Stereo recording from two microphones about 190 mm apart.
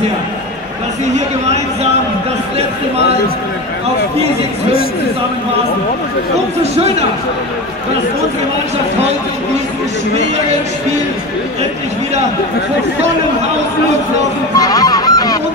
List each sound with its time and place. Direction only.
1.0 s a man's voice: 40° right (ahead or behind)
6.6 s a man's voice: 35° right (ahead or behind)
14.6 s honk: 20° left (ahead or behind)